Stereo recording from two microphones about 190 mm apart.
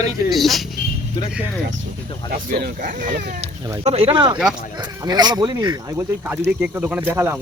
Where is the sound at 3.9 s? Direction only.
30° right (ahead or behind).